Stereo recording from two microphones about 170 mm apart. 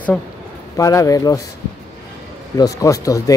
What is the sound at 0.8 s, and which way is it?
Speech, 20° left (ahead or behind).